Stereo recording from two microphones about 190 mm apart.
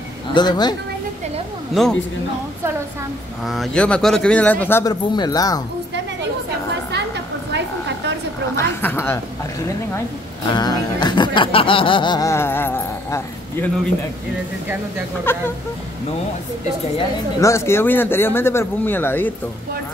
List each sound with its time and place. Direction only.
0.3 s music: 20° left (ahead or behind)
1.7 s speech: centre (ahead or behind)
3.4 s speech: centre (ahead or behind)
5.1 s music: 20° left (ahead or behind)
8.5 s a woman's voice: 15° left (ahead or behind)
10.5 s music: 20° left (ahead or behind)
15.3 s speech: 10° left (ahead or behind)
17.4 s speech: 15° left (ahead or behind)